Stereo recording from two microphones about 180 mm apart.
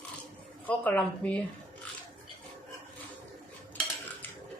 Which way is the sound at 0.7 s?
10° left (ahead or behind).